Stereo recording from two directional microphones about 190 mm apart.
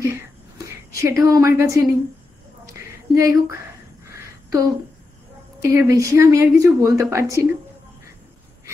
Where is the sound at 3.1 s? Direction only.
15° right (ahead or behind).